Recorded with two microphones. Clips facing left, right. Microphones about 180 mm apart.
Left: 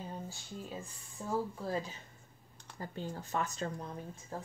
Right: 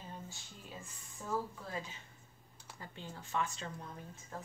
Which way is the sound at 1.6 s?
35° left (ahead or behind).